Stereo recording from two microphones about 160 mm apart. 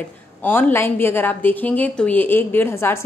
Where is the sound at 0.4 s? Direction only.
10° left (ahead or behind).